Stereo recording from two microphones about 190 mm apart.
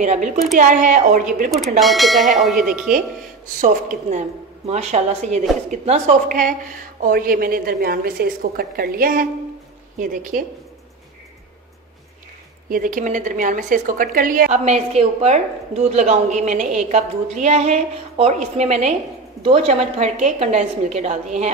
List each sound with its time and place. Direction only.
0.0 s a woman's voice: 40° right (ahead or behind)
1.8 s speech: centre (ahead or behind)
2.9 s a woman's voice: 50° right (ahead or behind)
12.6 s a woman's voice: 45° right (ahead or behind)